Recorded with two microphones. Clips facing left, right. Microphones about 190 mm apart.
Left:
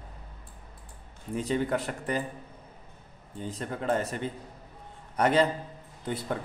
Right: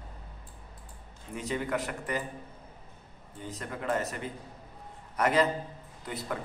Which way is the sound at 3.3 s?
30° left (ahead or behind).